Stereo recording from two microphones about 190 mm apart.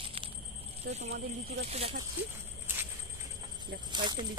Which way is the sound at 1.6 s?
30° right (ahead or behind).